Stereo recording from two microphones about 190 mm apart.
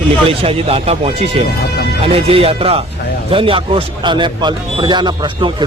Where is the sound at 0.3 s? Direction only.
30° right (ahead or behind).